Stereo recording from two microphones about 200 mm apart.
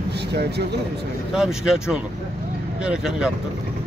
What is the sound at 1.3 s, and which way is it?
Speech, 5° right (ahead or behind).